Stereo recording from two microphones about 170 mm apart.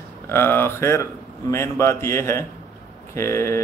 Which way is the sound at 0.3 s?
15° left (ahead or behind).